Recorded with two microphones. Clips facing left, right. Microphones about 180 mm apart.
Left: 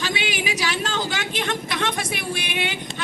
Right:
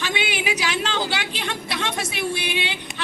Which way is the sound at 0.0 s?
40° left (ahead or behind).